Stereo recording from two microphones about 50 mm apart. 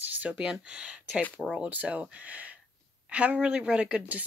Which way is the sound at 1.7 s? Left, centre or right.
Right.